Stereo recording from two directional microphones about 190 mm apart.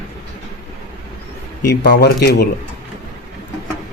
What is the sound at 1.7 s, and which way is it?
Speech, 60° left (ahead or behind).